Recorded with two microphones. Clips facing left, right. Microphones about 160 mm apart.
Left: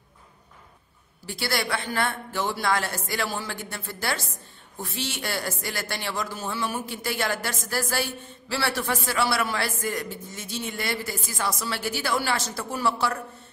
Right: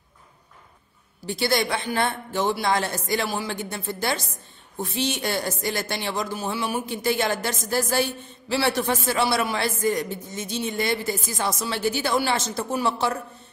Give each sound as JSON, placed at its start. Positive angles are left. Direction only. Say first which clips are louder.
{"t": 1.2, "sound": "speech", "louder": "right 5 dB", "side_deg": -20}